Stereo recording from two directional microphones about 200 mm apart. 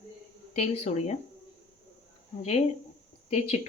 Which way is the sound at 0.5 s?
30° left (ahead or behind).